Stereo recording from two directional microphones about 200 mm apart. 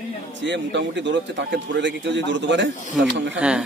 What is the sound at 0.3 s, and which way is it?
A man's voice, 65° right (ahead or behind).